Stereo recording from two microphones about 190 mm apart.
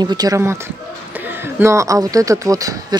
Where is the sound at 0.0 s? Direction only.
20° right (ahead or behind).